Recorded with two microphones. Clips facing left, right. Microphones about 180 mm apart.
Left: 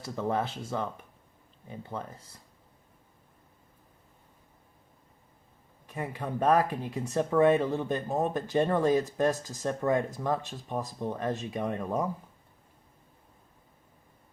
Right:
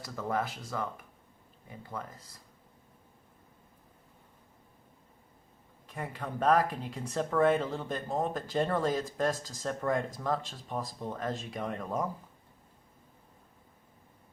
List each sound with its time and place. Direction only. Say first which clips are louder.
0.0 s speech: left 3 dB; 30° left (ahead or behind)
5.9 s speech: left 4 dB; 15° left (ahead or behind)